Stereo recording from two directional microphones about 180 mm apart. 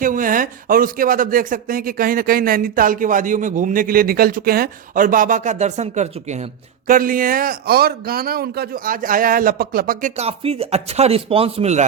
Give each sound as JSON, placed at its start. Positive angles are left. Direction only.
{"t": 0.0, "sound": "speech", "side_deg": -50}
{"t": 10.2, "sound": "speech", "side_deg": -35}